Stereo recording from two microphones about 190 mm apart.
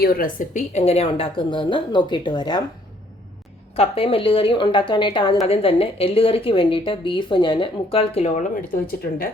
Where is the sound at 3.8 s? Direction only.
30° left (ahead or behind).